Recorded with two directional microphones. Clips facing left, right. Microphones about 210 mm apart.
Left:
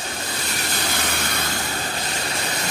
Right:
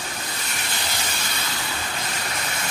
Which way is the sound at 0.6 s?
50° left (ahead or behind).